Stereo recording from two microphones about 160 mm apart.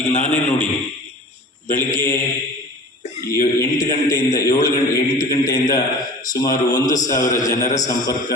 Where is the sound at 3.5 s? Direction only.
20° left (ahead or behind).